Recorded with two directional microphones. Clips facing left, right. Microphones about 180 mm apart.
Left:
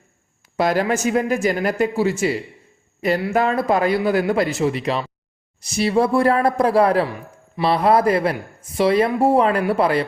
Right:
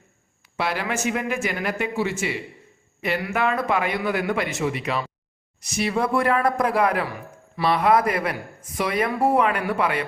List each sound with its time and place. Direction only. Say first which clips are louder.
0.5 s speech: left 7 dB; 40° left (ahead or behind)